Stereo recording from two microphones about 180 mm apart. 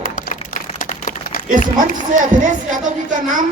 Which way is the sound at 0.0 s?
50° left (ahead or behind).